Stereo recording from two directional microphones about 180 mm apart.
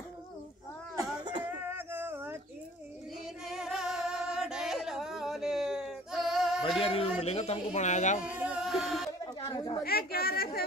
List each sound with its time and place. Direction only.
0.9 s a sound: 25° right (ahead or behind)
1.5 s music: 10° right (ahead or behind)
3.4 s music: 5° right (ahead or behind)
6.8 s speech: 30° left (ahead or behind)
8.2 s music: 10° right (ahead or behind)
9.8 s speech: 60° left (ahead or behind)